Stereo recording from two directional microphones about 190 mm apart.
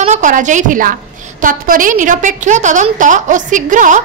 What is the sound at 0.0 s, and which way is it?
A woman's voice, 40° right (ahead or behind).